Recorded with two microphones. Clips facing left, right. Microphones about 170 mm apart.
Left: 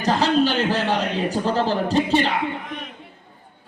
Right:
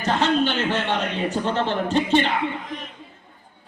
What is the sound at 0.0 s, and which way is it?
A man's voice, 35° left (ahead or behind).